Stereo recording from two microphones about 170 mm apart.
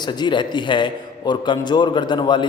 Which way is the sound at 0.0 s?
25° left (ahead or behind).